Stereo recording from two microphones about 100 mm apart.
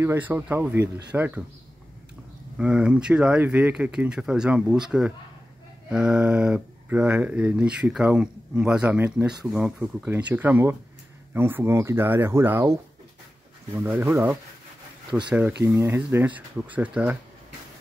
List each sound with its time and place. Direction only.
0.0 s speech: 25° right (ahead or behind)
2.5 s speech: 10° right (ahead or behind)
13.7 s speech: 20° right (ahead or behind)
15.1 s speech: 10° right (ahead or behind)
15.6 s speech: 25° right (ahead or behind)